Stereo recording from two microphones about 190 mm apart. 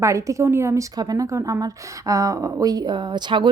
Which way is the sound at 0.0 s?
15° right (ahead or behind).